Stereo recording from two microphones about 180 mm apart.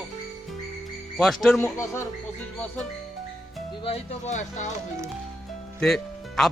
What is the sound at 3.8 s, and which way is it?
Speech, 40° left (ahead or behind).